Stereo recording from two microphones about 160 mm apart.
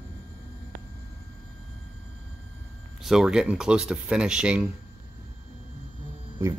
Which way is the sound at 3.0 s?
Centre (ahead or behind).